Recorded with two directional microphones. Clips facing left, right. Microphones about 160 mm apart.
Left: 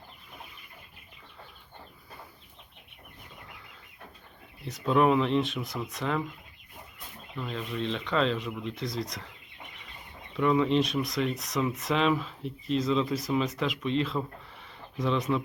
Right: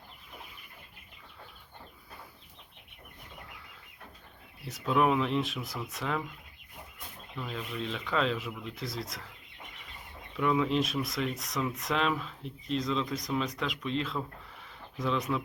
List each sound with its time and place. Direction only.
4.6 s speech: centre (ahead or behind)
7.3 s speech: centre (ahead or behind)
10.3 s speech: centre (ahead or behind)